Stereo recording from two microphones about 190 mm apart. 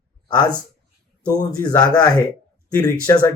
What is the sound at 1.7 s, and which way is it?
Speech, 20° left (ahead or behind).